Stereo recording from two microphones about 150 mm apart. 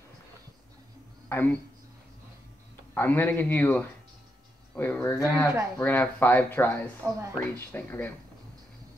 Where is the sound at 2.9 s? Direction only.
15° left (ahead or behind).